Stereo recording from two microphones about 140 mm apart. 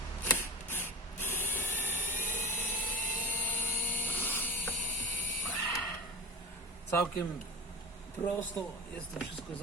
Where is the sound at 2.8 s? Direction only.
10° left (ahead or behind).